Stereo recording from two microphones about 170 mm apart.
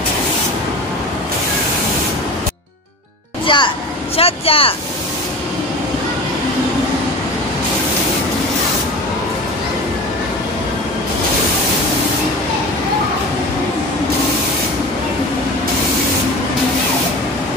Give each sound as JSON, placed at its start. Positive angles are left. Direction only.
{"t": 3.4, "sound": "music", "side_deg": 30}
{"t": 4.2, "sound": "speech", "side_deg": 35}